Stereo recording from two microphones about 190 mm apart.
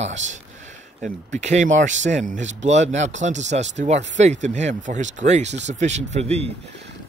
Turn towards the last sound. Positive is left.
turn(degrees=-35)  # may be behind; listen again after turning